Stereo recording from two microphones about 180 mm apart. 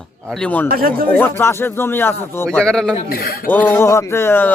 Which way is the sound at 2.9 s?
55° left (ahead or behind).